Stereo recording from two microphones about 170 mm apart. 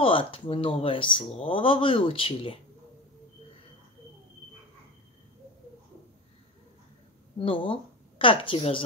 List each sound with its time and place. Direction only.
0.0 s speech: 30° left (ahead or behind)
7.3 s speech: 30° left (ahead or behind)